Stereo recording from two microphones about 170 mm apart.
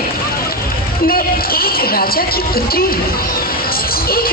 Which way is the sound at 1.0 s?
60° left (ahead or behind).